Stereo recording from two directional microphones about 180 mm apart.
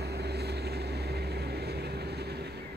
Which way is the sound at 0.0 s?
65° right (ahead or behind).